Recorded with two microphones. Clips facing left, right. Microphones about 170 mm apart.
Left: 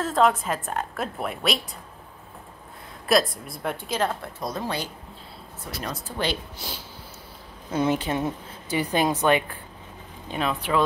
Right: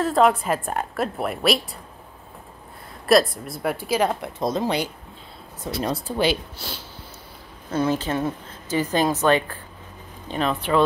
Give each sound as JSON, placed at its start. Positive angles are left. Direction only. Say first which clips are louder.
{"t": 0.0, "sound": "a woman's voice", "louder": "right 3 dB", "side_deg": -10}
{"t": 3.4, "sound": "a woman's voice", "louder": "right 5 dB", "side_deg": -5}
{"t": 4.1, "sound": "speech", "louder": "right 6 dB", "side_deg": -20}
{"t": 5.9, "sound": "a woman's voice", "louder": "right 5 dB", "side_deg": -10}
{"t": 7.7, "sound": "a woman's voice", "louder": "right 1 dB", "side_deg": 15}